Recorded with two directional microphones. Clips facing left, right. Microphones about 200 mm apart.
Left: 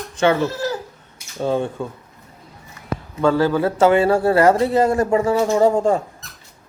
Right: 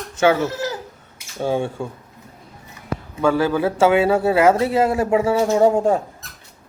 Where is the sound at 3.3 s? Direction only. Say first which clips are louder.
Left 1 dB; 15° right (ahead or behind).